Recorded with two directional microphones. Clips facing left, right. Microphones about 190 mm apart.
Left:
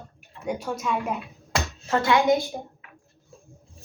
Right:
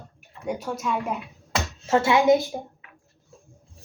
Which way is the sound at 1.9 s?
25° right (ahead or behind).